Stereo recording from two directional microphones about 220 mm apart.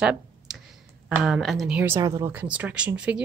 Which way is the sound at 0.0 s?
5° right (ahead or behind).